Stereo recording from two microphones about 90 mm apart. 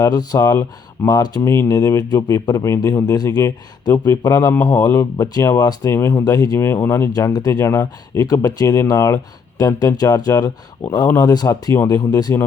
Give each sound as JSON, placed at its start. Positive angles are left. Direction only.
{"t": 0.0, "sound": "speech", "side_deg": 45}
{"t": 0.3, "sound": "speech", "side_deg": 35}
{"t": 1.0, "sound": "speech", "side_deg": 45}
{"t": 1.5, "sound": "speech", "side_deg": 35}
{"t": 3.9, "sound": "speech", "side_deg": 25}
{"t": 4.2, "sound": "speech", "side_deg": 40}
{"t": 4.5, "sound": "speech", "side_deg": 20}
{"t": 4.8, "sound": "speech", "side_deg": 35}
{"t": 5.9, "sound": "speech", "side_deg": 30}
{"t": 6.2, "sound": "speech", "side_deg": 40}
{"t": 6.6, "sound": "speech", "side_deg": 30}
{"t": 7.3, "sound": "speech", "side_deg": 45}
{"t": 7.6, "sound": "speech", "side_deg": 30}